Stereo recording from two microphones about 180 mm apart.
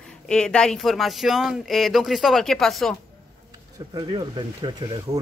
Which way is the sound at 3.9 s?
25° right (ahead or behind).